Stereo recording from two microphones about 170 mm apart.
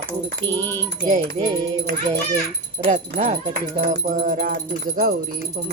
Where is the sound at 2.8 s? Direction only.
45° right (ahead or behind).